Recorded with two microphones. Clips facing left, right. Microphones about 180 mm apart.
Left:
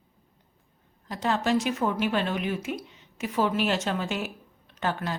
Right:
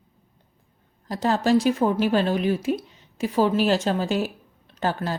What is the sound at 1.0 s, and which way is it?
A woman's voice, 35° right (ahead or behind).